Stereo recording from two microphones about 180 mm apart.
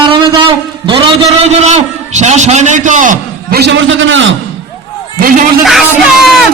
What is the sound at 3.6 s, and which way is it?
Speech, 85° right.